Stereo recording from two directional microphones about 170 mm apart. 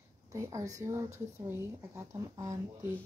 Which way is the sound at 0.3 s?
15° right (ahead or behind).